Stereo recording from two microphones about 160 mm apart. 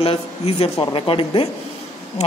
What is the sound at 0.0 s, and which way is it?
A man's voice, 35° left (ahead or behind).